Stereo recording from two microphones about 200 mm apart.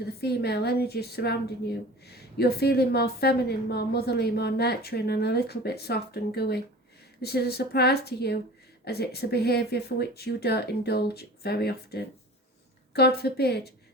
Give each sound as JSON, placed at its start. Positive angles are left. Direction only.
{"t": 0.0, "sound": "a woman's voice", "side_deg": 55}